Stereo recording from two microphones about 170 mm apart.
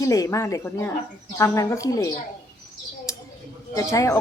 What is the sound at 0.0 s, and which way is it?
Speech, 20° left (ahead or behind).